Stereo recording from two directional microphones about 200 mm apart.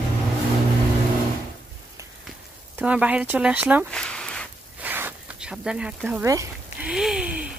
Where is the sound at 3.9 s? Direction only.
5° left (ahead or behind).